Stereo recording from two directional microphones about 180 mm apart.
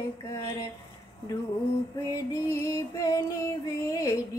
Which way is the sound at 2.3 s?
15° left (ahead or behind).